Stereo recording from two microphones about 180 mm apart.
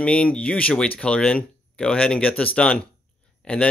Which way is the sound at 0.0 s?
5° left (ahead or behind).